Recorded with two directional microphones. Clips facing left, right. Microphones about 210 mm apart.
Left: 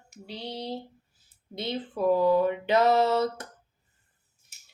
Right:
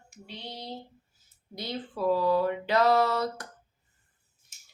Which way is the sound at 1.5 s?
20° left (ahead or behind).